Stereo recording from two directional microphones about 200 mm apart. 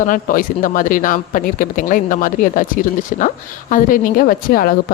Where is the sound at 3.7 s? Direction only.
40° left (ahead or behind).